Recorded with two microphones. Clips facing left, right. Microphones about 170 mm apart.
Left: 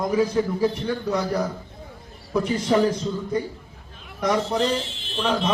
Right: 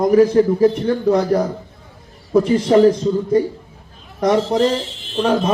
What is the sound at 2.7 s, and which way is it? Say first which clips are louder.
Speech: right 7 dB; 40° right (ahead or behind).